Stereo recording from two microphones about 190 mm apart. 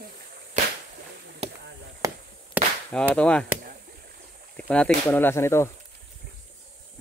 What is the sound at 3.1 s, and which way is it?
Speech, 5° left (ahead or behind).